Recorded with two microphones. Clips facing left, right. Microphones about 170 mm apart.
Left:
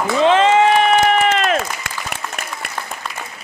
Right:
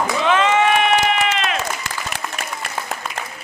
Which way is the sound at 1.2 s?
50° left (ahead or behind).